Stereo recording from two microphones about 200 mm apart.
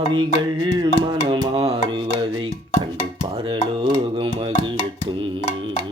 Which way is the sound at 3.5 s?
25° right (ahead or behind).